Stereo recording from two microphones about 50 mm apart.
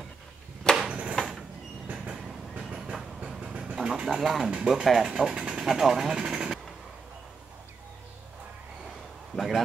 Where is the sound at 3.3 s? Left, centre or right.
Centre.